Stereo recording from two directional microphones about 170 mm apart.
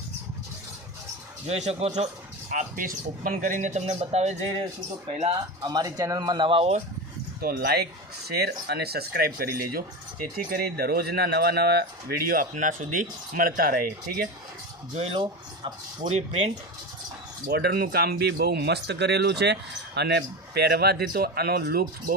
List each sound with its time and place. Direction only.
1.5 s speech: 40° right (ahead or behind)
5.6 s speech: 25° right (ahead or behind)
7.4 s speech: 65° right (ahead or behind)
14.9 s speech: 35° right (ahead or behind)
17.4 s speech: 65° right (ahead or behind)